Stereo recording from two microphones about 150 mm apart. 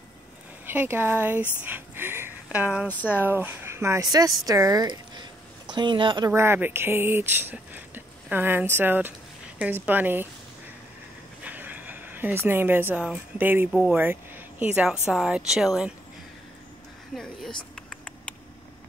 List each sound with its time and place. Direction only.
0.7 s speech: 15° right (ahead or behind)
2.9 s speech: 10° left (ahead or behind)
3.2 s speech: 15° right (ahead or behind); by 6.3 s 30° right (ahead or behind)
6.3 s speech: 15° right (ahead or behind)
11.4 s speech: 10° right (ahead or behind)
17.1 s speech: 5° left (ahead or behind)
17.7 s a sound: 5° left (ahead or behind)